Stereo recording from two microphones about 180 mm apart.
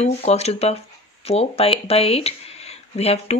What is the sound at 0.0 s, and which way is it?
Speech, 35° left (ahead or behind).